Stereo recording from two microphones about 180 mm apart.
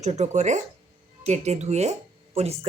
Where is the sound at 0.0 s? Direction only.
40° right (ahead or behind).